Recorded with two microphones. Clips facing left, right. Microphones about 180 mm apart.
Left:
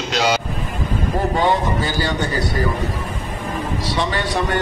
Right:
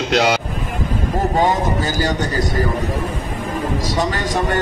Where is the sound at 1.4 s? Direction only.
45° right (ahead or behind).